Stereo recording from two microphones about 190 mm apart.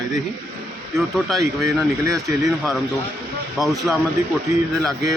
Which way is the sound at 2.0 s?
15° right (ahead or behind).